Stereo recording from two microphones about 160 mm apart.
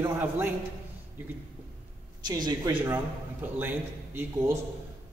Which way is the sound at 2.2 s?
25° right (ahead or behind).